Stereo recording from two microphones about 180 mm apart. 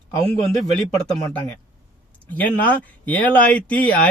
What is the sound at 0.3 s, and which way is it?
Speech, centre (ahead or behind).